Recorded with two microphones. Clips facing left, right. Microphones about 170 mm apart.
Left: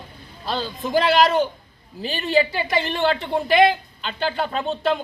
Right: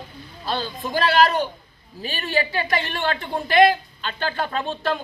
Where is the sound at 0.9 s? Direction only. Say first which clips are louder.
Left 1 dB; 20° left (ahead or behind).